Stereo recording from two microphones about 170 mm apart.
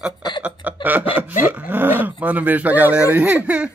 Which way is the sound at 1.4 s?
10° right (ahead or behind).